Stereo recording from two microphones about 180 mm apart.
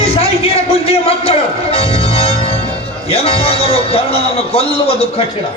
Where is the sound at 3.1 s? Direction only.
35° left (ahead or behind).